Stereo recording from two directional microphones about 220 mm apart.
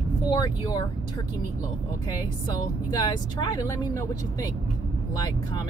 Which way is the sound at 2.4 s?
20° left (ahead or behind).